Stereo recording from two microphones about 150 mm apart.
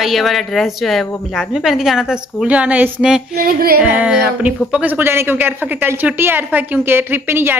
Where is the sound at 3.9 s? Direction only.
10° right (ahead or behind).